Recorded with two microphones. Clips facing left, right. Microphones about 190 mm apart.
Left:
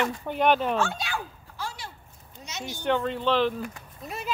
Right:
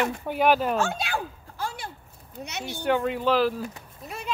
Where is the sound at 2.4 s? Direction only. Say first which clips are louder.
Right 1 dB; 60° right (ahead or behind).